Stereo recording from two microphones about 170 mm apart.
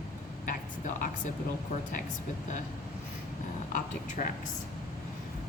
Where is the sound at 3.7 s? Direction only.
50° left (ahead or behind).